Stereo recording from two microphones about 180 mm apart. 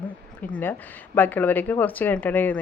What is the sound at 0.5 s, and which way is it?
Speech, 10° left (ahead or behind).